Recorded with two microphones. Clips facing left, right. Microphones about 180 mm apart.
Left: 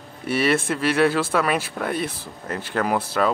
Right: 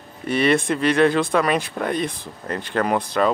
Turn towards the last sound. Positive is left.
turn(degrees=5)  # may be behind; listen again after turning